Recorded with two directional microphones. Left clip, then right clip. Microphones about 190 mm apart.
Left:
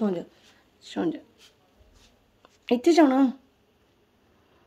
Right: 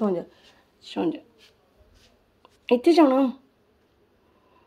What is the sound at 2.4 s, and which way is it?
Speech, 25° left (ahead or behind).